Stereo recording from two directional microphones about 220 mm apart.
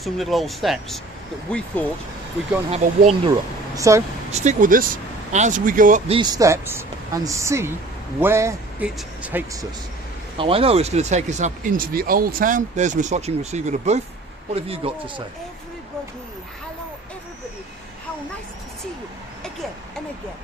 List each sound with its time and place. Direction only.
0.0 s speech: centre (ahead or behind)
2.6 s a man's voice: 30° right (ahead or behind)
3.8 s speech: 15° right (ahead or behind)
4.3 s speech: 30° right (ahead or behind)
6.1 s speech: 20° right (ahead or behind)
10.3 s a man's voice: 25° right (ahead or behind)